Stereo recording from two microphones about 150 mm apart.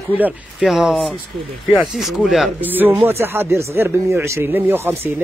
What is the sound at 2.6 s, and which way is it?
Speech, 15° right (ahead or behind).